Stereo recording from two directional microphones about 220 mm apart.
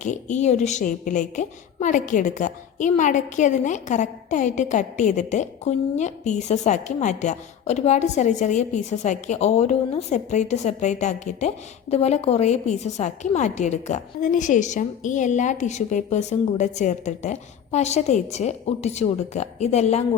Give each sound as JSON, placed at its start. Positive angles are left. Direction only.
{"t": 0.0, "sound": "a woman's voice", "side_deg": 35}